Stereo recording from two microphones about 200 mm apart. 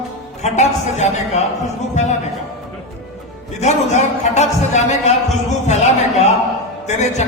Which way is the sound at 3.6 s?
35° left (ahead or behind).